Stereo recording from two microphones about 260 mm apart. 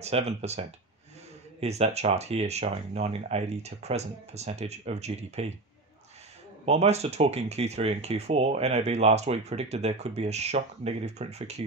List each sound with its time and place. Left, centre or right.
0.0 s speech: right
6.6 s speech: right